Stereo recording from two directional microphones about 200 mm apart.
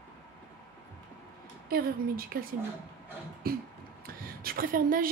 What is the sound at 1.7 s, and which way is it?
Speech, 45° right (ahead or behind).